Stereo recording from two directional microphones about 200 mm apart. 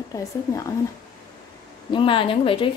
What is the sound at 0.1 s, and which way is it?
Speech, 15° left (ahead or behind).